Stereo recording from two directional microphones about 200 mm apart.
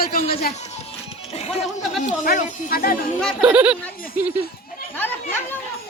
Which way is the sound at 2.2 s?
40° left (ahead or behind).